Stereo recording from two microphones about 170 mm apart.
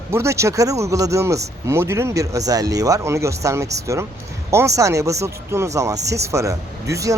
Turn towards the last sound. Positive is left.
turn(degrees=-20)  # may be behind; listen again after turning